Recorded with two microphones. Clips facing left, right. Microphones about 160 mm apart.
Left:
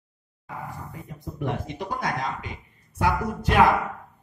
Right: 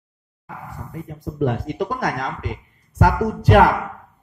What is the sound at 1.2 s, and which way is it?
Speech, 75° right (ahead or behind).